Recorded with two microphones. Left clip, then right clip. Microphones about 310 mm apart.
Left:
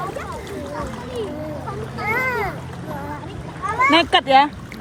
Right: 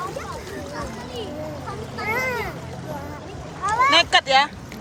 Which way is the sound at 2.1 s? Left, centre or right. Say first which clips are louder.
Left 4 dB; centre.